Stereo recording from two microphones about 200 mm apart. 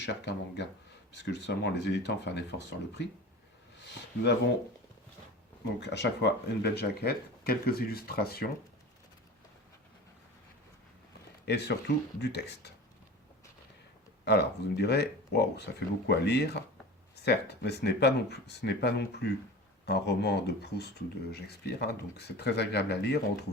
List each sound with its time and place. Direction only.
0.0 s speech: 60° left (ahead or behind)
5.8 s speech: 60° left (ahead or behind)
11.4 s speech: 55° left (ahead or behind)
14.3 s speech: 55° left (ahead or behind)